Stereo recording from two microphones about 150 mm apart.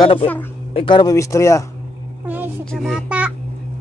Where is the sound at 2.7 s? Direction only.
5° right (ahead or behind).